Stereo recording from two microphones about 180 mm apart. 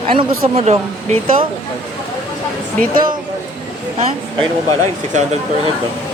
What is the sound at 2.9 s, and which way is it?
Speech, 50° right (ahead or behind).